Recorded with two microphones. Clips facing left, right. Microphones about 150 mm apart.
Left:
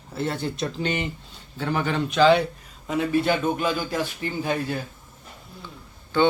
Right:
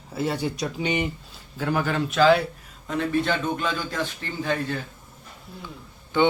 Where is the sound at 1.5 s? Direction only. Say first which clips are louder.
Even; centre (ahead or behind).